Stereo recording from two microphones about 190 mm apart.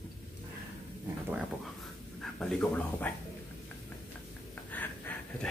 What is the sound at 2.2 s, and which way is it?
Speech, 5° left (ahead or behind).